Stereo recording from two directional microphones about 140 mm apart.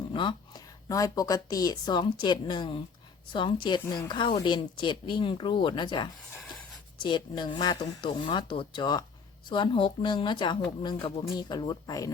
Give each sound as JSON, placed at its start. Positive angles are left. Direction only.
{"t": 0.1, "sound": "a woman's voice", "side_deg": 35}